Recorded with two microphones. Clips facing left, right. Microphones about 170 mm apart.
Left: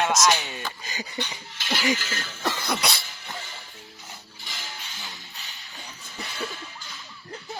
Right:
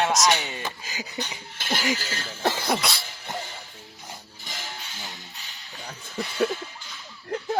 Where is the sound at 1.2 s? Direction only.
50° right (ahead or behind).